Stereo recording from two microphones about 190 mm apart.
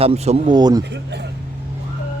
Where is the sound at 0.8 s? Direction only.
65° right (ahead or behind).